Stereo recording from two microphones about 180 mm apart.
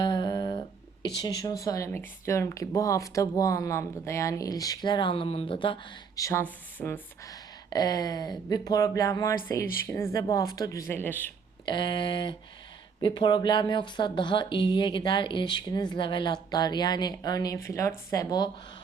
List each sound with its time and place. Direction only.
0.0 s humming: 25° left (ahead or behind)
1.2 s speech: 20° left (ahead or behind)
6.2 s speech: 10° left (ahead or behind)
11.6 s speech: 25° left (ahead or behind)